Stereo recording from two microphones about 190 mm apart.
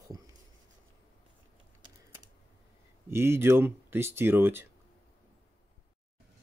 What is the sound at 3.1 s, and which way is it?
Speech, 15° right (ahead or behind).